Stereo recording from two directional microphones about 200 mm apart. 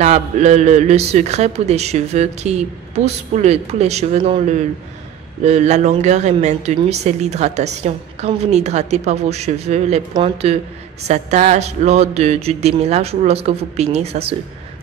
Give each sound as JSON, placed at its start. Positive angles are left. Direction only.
{"t": 0.0, "sound": "speech", "side_deg": -35}